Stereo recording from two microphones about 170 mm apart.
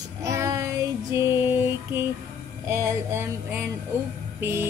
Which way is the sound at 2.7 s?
15° right (ahead or behind).